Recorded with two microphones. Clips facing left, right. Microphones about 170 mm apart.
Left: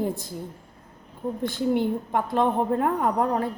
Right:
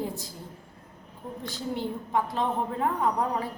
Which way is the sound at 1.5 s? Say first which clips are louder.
Left 8 dB; 60° left (ahead or behind).